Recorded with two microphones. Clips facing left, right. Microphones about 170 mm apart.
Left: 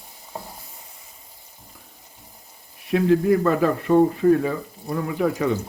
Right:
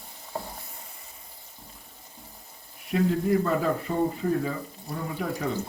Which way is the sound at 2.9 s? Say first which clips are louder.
Left 6 dB; 80° left.